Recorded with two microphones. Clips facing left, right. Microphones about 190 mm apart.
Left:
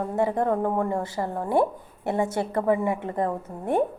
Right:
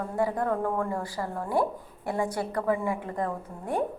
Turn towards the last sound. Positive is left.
turn(degrees=25)  # may be behind; listen again after turning